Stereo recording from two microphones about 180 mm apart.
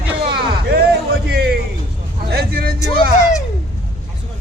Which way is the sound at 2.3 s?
60° right (ahead or behind).